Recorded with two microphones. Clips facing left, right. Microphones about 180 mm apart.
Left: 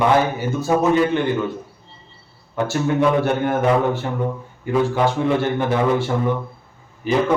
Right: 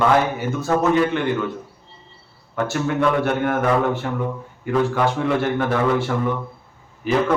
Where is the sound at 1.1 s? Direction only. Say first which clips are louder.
Left 2 dB; 30° left (ahead or behind).